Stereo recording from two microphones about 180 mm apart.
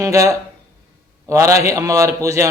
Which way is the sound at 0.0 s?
20° right (ahead or behind).